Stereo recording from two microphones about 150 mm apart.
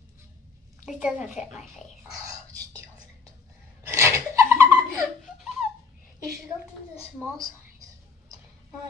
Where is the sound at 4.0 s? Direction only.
20° right (ahead or behind).